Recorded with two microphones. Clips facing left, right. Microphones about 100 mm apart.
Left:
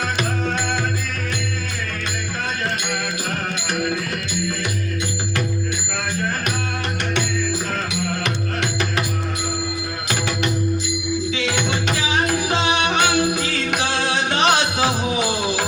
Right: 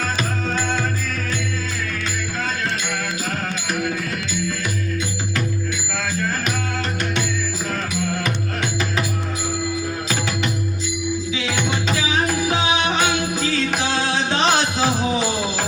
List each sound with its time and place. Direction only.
8.2 s music: 70° left (ahead or behind)
12.2 s music: 70° left (ahead or behind)